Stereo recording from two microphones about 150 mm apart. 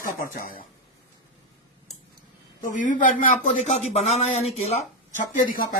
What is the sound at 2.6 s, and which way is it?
Speech, 60° left (ahead or behind).